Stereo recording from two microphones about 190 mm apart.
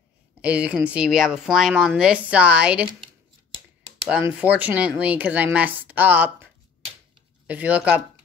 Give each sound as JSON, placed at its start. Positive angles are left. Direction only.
{"t": 0.4, "sound": "speech", "side_deg": -5}
{"t": 4.4, "sound": "speech", "side_deg": -10}